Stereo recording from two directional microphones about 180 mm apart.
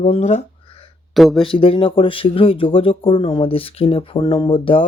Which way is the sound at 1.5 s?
30° left (ahead or behind).